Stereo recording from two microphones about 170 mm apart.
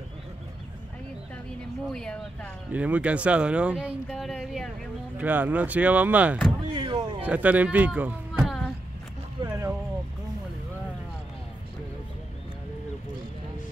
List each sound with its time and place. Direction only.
1.9 s speech: 5° left (ahead or behind)
2.7 s speech: 10° right (ahead or behind)
6.7 s speech: 25° right (ahead or behind)
7.2 s speech: 10° right (ahead or behind)
9.4 s a sound: 15° right (ahead or behind)